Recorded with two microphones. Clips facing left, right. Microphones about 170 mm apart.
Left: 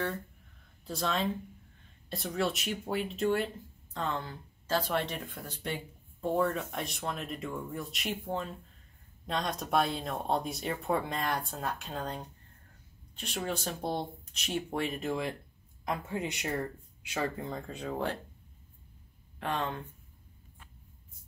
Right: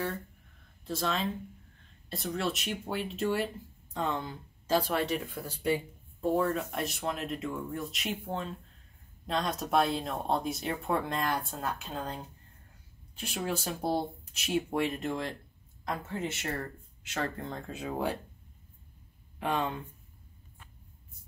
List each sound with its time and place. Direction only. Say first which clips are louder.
0.8 s speech: even; centre (ahead or behind)
3.9 s speech: right 2 dB; 15° right (ahead or behind); by 15.3 s 5° left (ahead or behind)
15.8 s speech: left 1 dB; 15° left (ahead or behind); by 18.1 s 5° right (ahead or behind)
19.4 s speech: right 3 dB; 15° right (ahead or behind)